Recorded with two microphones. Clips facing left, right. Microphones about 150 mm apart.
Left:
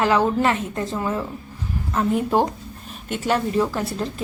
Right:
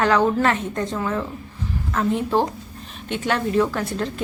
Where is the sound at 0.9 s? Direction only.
15° left (ahead or behind).